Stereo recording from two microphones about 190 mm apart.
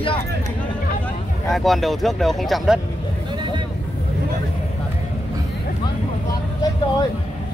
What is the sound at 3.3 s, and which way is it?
Vehicle, 25° right (ahead or behind).